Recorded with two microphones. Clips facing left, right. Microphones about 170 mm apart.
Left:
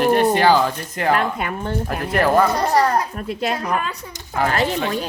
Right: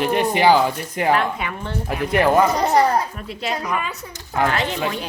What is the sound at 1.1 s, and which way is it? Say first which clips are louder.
Speech: left 2 dB; 45° left (ahead or behind).